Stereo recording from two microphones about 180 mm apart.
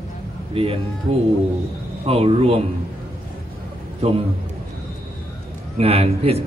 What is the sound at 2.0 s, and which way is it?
Speech, 30° right (ahead or behind).